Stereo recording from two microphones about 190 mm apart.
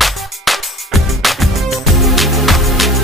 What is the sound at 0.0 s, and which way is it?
Music, centre (ahead or behind).